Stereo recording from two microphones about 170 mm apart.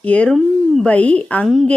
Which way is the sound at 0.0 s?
5° left (ahead or behind).